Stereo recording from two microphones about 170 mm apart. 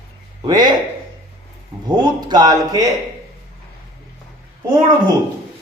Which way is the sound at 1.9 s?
25° right (ahead or behind).